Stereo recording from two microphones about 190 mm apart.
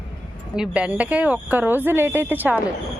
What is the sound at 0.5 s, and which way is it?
Speech, 5° right (ahead or behind).